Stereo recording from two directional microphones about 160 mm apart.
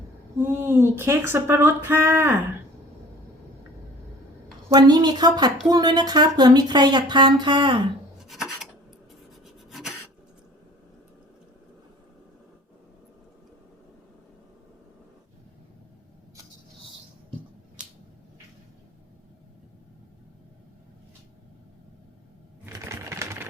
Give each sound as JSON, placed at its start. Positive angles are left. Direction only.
{"t": 0.4, "sound": "speech", "side_deg": -15}
{"t": 4.7, "sound": "speech", "side_deg": -25}
{"t": 8.2, "sound": "filing", "side_deg": 0}
{"t": 9.6, "sound": "filing", "side_deg": 0}
{"t": 22.6, "sound": "typewriter", "side_deg": -15}